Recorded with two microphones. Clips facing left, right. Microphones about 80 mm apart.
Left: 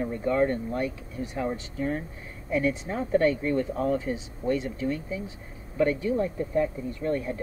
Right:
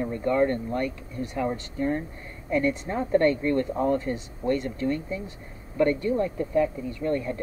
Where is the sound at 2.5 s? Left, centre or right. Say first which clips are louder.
Right 1 dB; centre.